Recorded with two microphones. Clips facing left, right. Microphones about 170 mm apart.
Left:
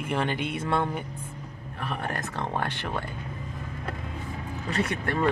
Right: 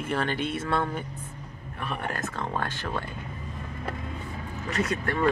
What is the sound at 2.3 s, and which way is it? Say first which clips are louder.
Speech: left 1 dB; 30° left (ahead or behind).